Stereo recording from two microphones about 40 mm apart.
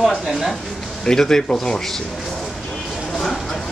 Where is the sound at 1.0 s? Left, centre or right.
Centre.